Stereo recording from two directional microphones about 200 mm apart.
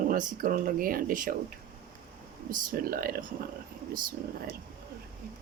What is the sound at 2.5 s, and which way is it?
Speech, 45° right (ahead or behind).